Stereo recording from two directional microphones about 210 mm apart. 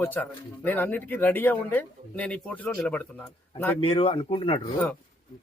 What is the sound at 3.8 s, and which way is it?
Speech, 25° left (ahead or behind).